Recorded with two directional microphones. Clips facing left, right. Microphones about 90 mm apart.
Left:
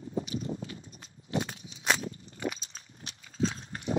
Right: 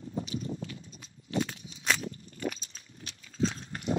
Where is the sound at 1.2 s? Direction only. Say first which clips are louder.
Right 1 dB; 30° left (ahead or behind).